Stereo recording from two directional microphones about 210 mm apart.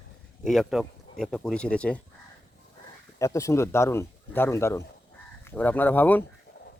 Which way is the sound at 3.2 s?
15° left (ahead or behind).